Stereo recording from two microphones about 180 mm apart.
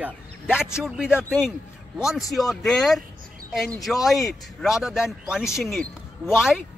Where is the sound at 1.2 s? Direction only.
10° left (ahead or behind).